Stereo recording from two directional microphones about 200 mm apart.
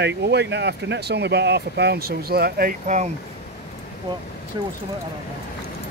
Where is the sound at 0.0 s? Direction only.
60° right (ahead or behind); by 3.1 s 40° right (ahead or behind).